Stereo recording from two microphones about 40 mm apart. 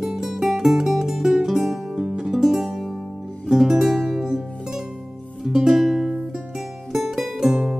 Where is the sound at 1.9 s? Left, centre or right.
Centre.